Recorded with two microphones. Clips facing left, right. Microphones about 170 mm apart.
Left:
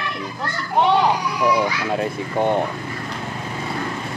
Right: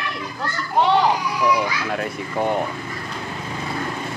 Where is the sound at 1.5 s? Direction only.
25° left (ahead or behind).